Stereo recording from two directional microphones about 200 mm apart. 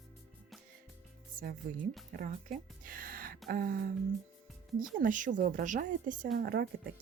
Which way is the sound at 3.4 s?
45° right (ahead or behind).